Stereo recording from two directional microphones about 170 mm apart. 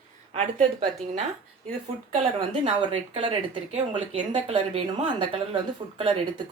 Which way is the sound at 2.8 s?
30° right (ahead or behind).